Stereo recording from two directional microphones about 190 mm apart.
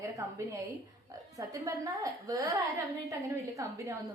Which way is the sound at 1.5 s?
15° right (ahead or behind).